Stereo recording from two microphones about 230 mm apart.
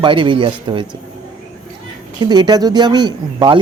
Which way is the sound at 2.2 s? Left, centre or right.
Centre.